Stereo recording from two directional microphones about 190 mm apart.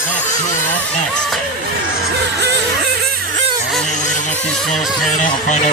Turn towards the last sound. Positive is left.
turn(degrees=40)  # may be behind; listen again after turning